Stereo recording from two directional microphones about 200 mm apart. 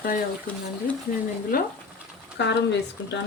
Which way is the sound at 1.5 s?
45° left (ahead or behind).